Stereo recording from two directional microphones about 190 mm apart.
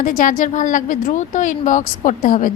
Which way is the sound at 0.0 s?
45° left (ahead or behind).